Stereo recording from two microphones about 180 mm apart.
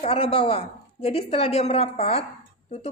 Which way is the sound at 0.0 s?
30° left (ahead or behind).